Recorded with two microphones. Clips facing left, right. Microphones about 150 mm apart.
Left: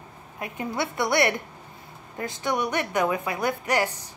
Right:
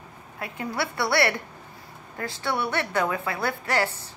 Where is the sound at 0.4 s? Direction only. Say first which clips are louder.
Left 1 dB; 20° left (ahead or behind).